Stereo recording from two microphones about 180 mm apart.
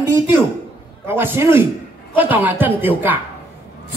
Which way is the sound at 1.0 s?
10° right (ahead or behind).